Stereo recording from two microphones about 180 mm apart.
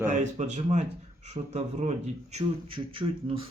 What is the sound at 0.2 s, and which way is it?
Speech, 40° right (ahead or behind).